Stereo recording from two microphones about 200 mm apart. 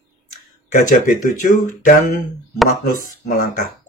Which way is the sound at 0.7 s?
40° left (ahead or behind).